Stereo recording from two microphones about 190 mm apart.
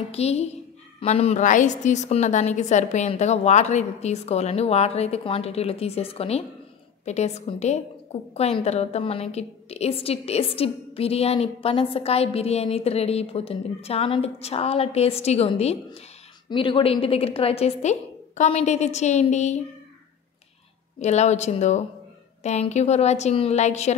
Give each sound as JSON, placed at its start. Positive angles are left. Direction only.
{"t": 0.1, "sound": "a woman's voice", "side_deg": 35}
{"t": 21.0, "sound": "a woman's voice", "side_deg": 35}